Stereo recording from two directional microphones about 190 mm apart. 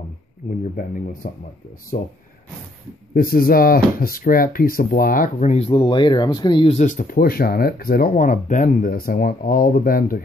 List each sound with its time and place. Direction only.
0.7 s speech: 45° left (ahead or behind)
3.2 s speech: 50° left (ahead or behind)